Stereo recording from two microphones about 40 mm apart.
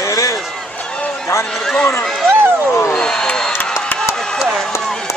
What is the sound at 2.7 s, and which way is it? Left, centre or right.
Cat, left.